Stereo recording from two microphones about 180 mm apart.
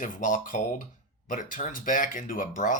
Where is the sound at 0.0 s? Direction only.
45° left (ahead or behind).